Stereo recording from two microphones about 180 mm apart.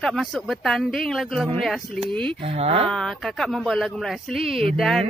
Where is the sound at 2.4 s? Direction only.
30° right (ahead or behind).